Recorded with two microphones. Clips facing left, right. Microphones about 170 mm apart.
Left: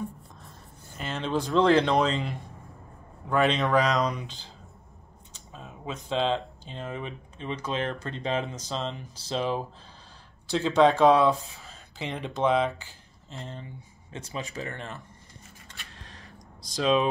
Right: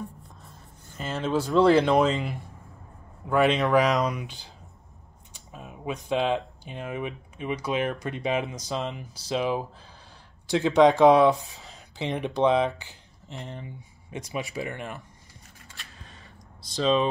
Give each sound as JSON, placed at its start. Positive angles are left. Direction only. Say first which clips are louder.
{"t": 1.0, "sound": "speech", "louder": "right 2 dB", "side_deg": -5}
{"t": 15.7, "sound": "a sound", "louder": "even", "side_deg": 0}
{"t": 16.7, "sound": "speech", "louder": "right 1 dB", "side_deg": 5}